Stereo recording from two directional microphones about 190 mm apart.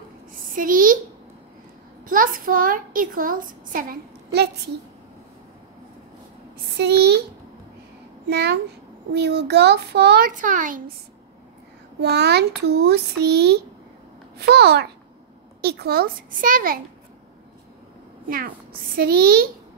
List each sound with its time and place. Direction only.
0.6 s a child's voice: 45° right (ahead or behind)
2.0 s a child's voice: 45° right (ahead or behind)
6.8 s a child's voice: 60° right (ahead or behind)
8.3 s a child's voice: 60° right (ahead or behind); by 10.8 s 45° right (ahead or behind)
12.0 s a child's voice: 60° right (ahead or behind)
18.3 s a child's voice: 50° right (ahead or behind)